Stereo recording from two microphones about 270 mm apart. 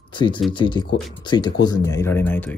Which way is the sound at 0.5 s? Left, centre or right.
Centre.